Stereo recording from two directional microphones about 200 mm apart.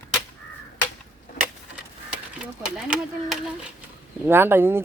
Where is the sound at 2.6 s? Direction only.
5° right (ahead or behind).